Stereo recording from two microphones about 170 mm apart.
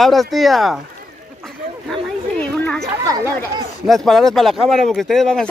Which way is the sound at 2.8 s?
20° right (ahead or behind).